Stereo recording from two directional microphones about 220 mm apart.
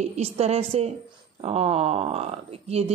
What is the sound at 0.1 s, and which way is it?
Speech, 30° right (ahead or behind).